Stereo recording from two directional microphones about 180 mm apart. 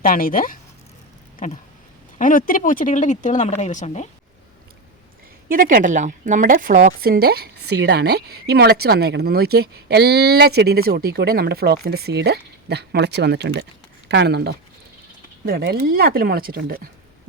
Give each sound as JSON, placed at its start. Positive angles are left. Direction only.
{"t": 0.0, "sound": "speech", "side_deg": 50}
{"t": 5.5, "sound": "a woman's voice", "side_deg": -50}